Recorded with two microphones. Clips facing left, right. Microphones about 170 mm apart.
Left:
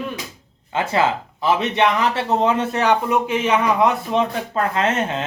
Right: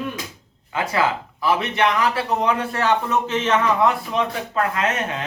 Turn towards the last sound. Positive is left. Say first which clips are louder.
# left 3 dB
turn(degrees=30)  # may be behind; listen again after turning